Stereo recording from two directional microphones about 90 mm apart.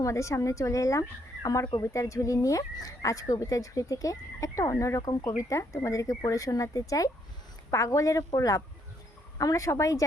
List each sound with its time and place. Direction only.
0.0 s speech: 35° left (ahead or behind)
1.7 s speech: 35° left (ahead or behind)